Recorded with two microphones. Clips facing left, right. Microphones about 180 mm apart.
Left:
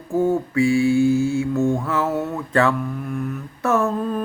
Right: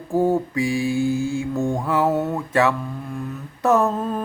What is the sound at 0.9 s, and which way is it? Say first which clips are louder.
Mantra: left 4 dB; 20° left (ahead or behind).